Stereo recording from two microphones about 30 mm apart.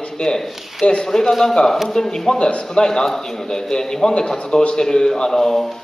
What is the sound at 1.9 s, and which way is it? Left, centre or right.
A man's voice, centre.